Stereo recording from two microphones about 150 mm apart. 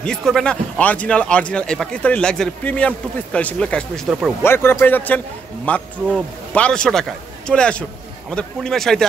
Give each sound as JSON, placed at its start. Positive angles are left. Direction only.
{"t": 0.0, "sound": "a man's voice", "side_deg": 5}